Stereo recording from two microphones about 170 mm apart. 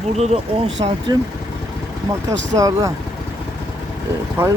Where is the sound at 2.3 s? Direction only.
45° right (ahead or behind).